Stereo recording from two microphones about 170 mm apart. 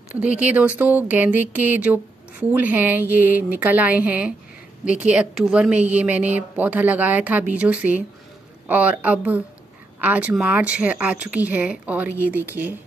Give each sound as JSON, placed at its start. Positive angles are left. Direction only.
{"t": 0.4, "sound": "speech", "side_deg": -10}